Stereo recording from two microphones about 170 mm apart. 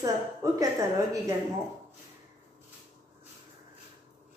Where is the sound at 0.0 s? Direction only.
20° right (ahead or behind).